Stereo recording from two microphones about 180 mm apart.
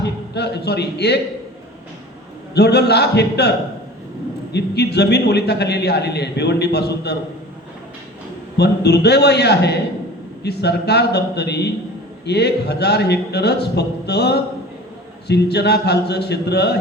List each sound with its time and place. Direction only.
0.0 s a sound: 70° left (ahead or behind)
2.6 s a man's voice: 65° left (ahead or behind)
4.5 s a man's voice: 65° left (ahead or behind)
8.5 s a man's voice: 65° left (ahead or behind)